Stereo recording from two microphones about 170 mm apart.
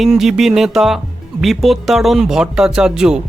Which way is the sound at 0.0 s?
Centre (ahead or behind).